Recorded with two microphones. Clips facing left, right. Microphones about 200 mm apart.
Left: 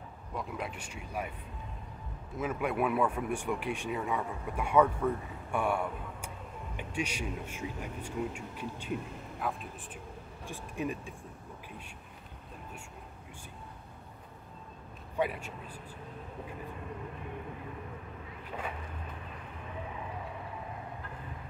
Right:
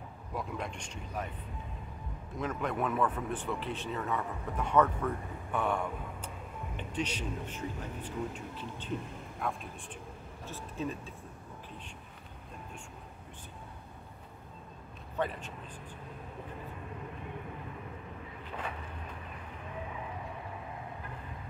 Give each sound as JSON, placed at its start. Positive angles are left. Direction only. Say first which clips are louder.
{"t": 0.3, "sound": "speech", "louder": "even", "side_deg": 0}
{"t": 2.3, "sound": "speech", "louder": "left 2 dB", "side_deg": 5}
{"t": 15.1, "sound": "speech", "louder": "left 2 dB", "side_deg": 10}